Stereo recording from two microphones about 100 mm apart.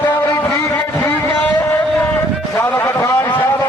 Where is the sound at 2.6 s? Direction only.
25° left (ahead or behind).